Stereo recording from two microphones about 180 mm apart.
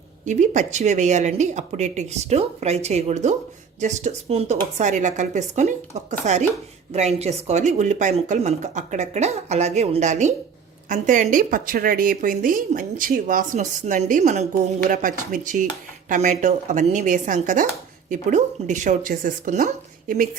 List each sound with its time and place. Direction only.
0.3 s speech: 40° right (ahead or behind)